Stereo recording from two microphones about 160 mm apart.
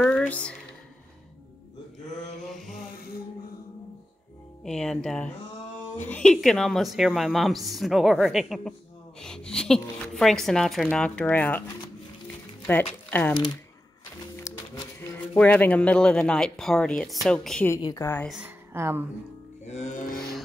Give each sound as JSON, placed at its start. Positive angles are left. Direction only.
{"t": 0.0, "sound": "a sound", "side_deg": 5}
{"t": 4.6, "sound": "a woman's voice", "side_deg": 5}
{"t": 13.1, "sound": "a woman's voice", "side_deg": 10}
{"t": 15.0, "sound": "a woman's voice", "side_deg": 10}
{"t": 17.6, "sound": "a woman's voice", "side_deg": 20}
{"t": 18.2, "sound": "a woman's voice", "side_deg": -5}
{"t": 19.6, "sound": "music", "side_deg": 45}